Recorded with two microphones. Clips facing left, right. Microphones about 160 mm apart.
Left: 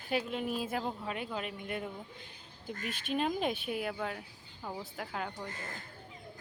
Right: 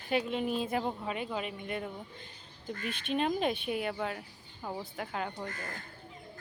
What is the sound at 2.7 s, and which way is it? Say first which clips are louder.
Speech: right 2 dB; 50° left (ahead or behind).